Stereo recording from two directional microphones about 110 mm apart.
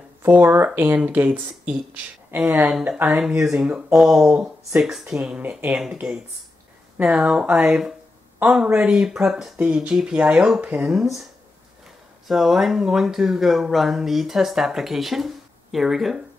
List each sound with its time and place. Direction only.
0.2 s speech: 20° right (ahead or behind)
12.3 s speech: 5° right (ahead or behind)